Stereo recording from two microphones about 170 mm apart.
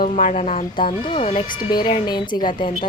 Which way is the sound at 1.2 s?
55° left (ahead or behind).